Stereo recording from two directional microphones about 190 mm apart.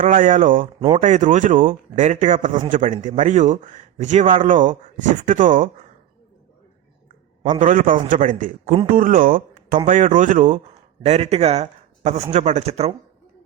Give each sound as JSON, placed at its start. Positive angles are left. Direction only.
{"t": 0.0, "sound": "speech", "side_deg": -45}
{"t": 7.6, "sound": "speech", "side_deg": -45}